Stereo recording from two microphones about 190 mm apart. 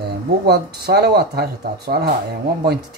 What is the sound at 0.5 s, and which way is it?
Speech, 60° right (ahead or behind).